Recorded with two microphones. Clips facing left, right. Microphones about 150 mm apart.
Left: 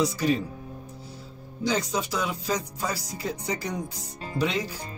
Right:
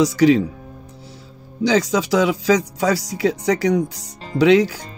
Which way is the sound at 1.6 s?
90° right.